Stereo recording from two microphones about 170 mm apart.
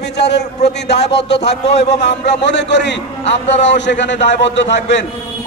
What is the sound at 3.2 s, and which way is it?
Speech, 40° left (ahead or behind).